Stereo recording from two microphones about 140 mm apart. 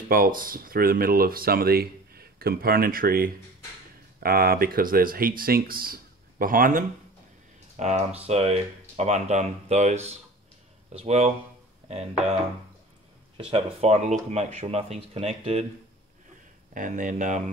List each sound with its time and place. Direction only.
0.1 s speech: 90° right
7.7 s speech: 55° right (ahead or behind)
13.5 s speech: 45° right (ahead or behind)
16.7 s speech: 65° right (ahead or behind)